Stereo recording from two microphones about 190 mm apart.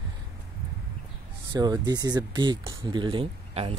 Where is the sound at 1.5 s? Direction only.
20° right (ahead or behind).